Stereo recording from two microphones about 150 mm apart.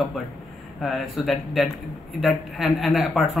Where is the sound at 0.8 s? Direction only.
Centre (ahead or behind).